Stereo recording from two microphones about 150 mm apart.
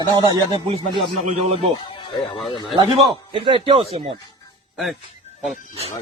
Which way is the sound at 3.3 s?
35° right (ahead or behind).